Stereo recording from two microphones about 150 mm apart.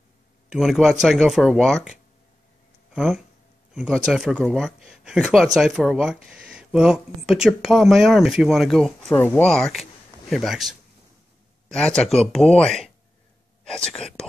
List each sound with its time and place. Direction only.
0.5 s speech: centre (ahead or behind)
2.9 s a sound: 5° right (ahead or behind)
3.7 s speech: 5° right (ahead or behind)